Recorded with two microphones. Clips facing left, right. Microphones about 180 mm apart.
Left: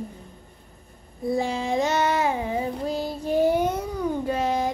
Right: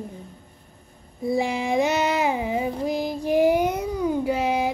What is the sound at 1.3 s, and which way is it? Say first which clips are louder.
Child singing: right 2 dB; 10° right (ahead or behind).